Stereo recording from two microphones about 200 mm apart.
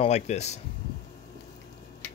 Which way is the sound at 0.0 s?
35° left (ahead or behind).